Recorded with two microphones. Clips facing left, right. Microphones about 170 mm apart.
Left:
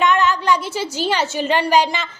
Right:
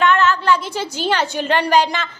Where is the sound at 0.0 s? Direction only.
10° left (ahead or behind).